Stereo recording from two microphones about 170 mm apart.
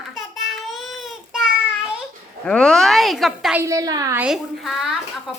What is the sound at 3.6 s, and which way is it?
Speech, 20° right (ahead or behind).